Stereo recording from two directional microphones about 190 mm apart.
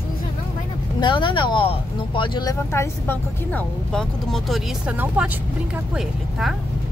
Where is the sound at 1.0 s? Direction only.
25° left (ahead or behind); by 6.5 s centre (ahead or behind).